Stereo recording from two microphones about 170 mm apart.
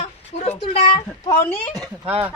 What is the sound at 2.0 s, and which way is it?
Speech, 10° right (ahead or behind).